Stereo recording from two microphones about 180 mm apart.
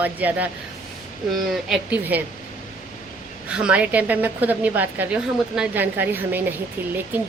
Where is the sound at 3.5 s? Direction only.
5° right (ahead or behind).